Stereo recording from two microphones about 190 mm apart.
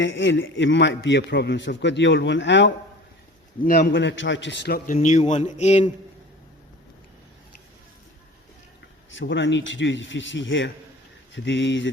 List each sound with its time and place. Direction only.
0.0 s a man's voice: 75° left (ahead or behind)
3.9 s a man's voice: 75° left (ahead or behind)
4.9 s speech: 40° left (ahead or behind)
9.1 s a man's voice: 75° left (ahead or behind)